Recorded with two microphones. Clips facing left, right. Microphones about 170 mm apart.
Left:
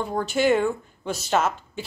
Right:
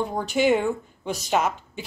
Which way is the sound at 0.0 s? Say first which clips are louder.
Even; 15° right (ahead or behind).